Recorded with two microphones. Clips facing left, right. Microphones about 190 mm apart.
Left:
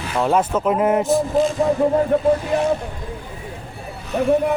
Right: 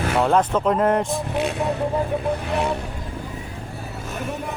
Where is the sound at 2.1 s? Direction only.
60° left (ahead or behind).